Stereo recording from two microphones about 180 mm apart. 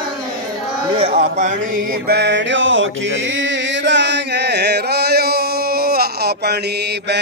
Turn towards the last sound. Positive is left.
turn(degrees=-65)  # may be behind; listen again after turning